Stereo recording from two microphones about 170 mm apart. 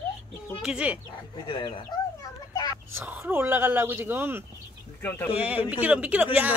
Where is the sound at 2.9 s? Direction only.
10° right (ahead or behind).